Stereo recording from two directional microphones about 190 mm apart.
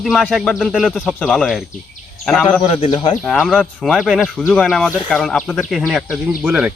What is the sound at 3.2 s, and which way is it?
Speech, centre (ahead or behind).